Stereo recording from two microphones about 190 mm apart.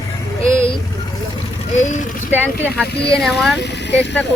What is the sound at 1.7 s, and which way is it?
Speech, 40° left (ahead or behind).